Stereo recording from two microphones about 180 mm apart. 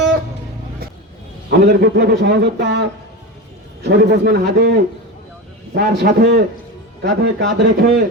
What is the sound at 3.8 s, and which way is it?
Speech, 65° right (ahead or behind).